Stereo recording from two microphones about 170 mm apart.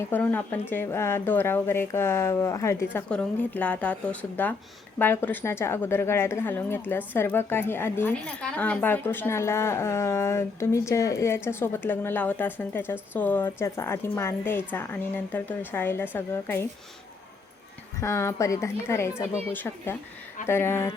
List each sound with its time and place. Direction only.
0.0 s a woman's voice: 10° left (ahead or behind)
18.0 s a woman's voice: 15° left (ahead or behind)